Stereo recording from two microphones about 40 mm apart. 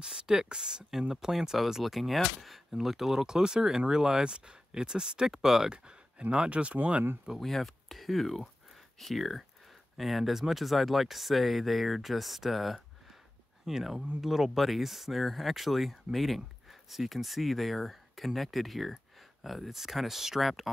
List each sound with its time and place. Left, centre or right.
0.0 s speech: centre
6.8 s speech: right
7.3 s speech: centre